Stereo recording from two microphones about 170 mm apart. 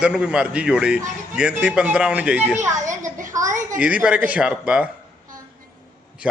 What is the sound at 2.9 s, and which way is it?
Speech, 50° right (ahead or behind).